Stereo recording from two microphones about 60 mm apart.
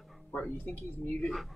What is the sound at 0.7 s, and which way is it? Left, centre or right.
Speech, left.